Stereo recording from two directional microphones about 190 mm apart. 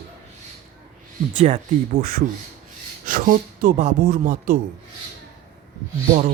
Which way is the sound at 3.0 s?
45° right (ahead or behind).